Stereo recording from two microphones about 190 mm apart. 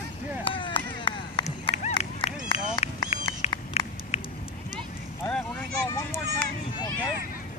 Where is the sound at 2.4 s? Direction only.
30° left (ahead or behind).